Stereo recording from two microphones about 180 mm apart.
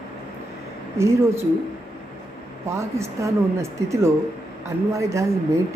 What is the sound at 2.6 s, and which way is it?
A woman's voice, 15° right (ahead or behind).